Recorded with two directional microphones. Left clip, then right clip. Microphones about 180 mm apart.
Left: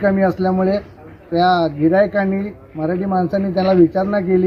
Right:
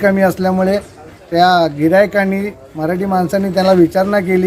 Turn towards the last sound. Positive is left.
turn(degrees=-15)  # may be behind; listen again after turning